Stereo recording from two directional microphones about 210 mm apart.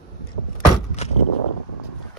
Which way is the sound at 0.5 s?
30° left (ahead or behind).